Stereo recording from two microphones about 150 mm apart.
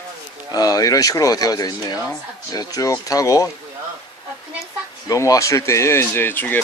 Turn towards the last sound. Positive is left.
turn(degrees=10)  # may be behind; listen again after turning